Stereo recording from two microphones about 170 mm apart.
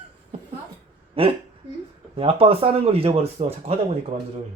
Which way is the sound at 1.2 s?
35° right (ahead or behind).